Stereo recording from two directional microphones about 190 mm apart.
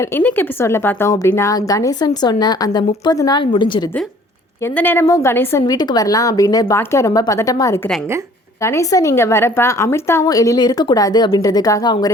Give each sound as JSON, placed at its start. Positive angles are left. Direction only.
{"t": 0.0, "sound": "a woman's voice", "side_deg": 10}
{"t": 4.6, "sound": "a woman's voice", "side_deg": 10}